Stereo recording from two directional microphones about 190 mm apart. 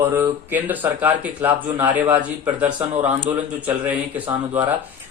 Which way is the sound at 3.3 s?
10° right (ahead or behind).